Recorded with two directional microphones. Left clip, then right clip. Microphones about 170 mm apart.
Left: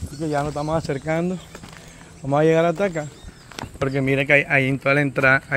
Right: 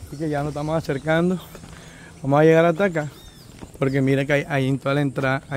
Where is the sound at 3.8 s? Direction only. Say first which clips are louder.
Even; 45° right (ahead or behind); by 5.5 s 10° right (ahead or behind).